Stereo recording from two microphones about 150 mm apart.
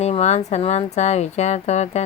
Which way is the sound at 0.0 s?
45° left (ahead or behind).